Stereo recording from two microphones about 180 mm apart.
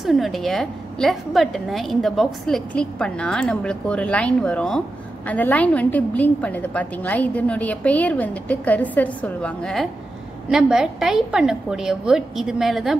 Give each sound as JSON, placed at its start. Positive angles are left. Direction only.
{"t": 0.0, "sound": "a woman's voice", "side_deg": 0}